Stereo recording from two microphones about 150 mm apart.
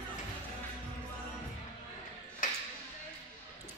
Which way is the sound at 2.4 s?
60° left (ahead or behind).